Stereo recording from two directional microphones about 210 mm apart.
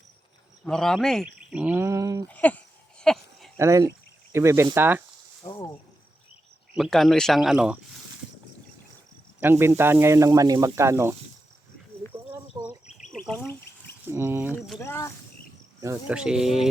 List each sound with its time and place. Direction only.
0.6 s speech: 5° left (ahead or behind); by 2.2 s 15° right (ahead or behind)
2.2 s speech: 5° left (ahead or behind)
3.0 s a sound: 5° left (ahead or behind)
3.6 s speech: 15° right (ahead or behind)
5.4 s a sound: 20° left (ahead or behind)
6.7 s speech: centre (ahead or behind)
9.4 s speech: 10° right (ahead or behind)
12.3 s a sound: 10° right (ahead or behind)
13.2 s insect: 5° left (ahead or behind)
14.1 s speech: 10° right (ahead or behind)
14.8 s speech: 15° left (ahead or behind)
15.8 s speech: 10° right (ahead or behind)